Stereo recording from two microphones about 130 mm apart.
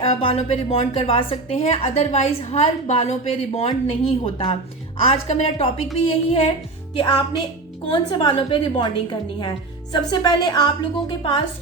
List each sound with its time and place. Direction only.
0.0 s a woman's voice: 45° left (ahead or behind)